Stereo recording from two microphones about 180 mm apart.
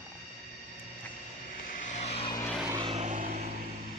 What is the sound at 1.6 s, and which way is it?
Vehicle, 45° left (ahead or behind).